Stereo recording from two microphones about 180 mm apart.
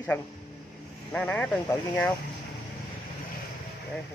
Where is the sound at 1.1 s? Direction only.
10° left (ahead or behind).